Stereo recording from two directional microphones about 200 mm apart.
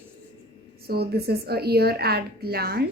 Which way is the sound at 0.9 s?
50° right (ahead or behind).